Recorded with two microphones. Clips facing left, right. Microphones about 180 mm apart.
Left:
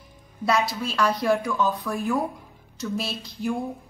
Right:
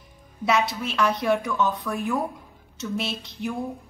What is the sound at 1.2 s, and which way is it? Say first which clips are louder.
A woman's voice: even; centre (ahead or behind).